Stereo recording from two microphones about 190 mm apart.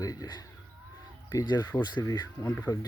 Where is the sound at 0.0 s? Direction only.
20° left (ahead or behind).